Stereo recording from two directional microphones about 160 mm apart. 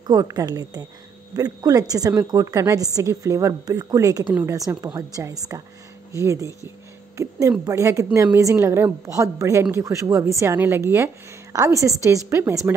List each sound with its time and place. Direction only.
0.0 s a woman's voice: 25° right (ahead or behind)